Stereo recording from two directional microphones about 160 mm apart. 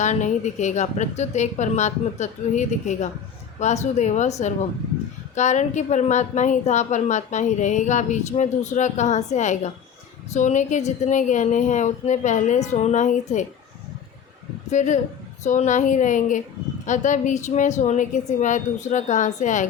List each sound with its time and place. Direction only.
0.0 s a woman's voice: 50° left (ahead or behind)
14.7 s a woman's voice: 50° left (ahead or behind)